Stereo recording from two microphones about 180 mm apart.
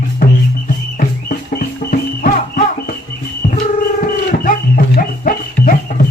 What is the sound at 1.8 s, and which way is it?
Music, 55° left (ahead or behind).